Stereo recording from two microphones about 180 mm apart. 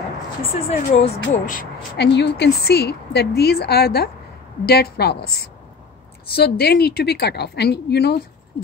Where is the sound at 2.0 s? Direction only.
70° left (ahead or behind).